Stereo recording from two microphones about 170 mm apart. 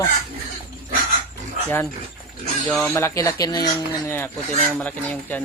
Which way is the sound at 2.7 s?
5° left (ahead or behind).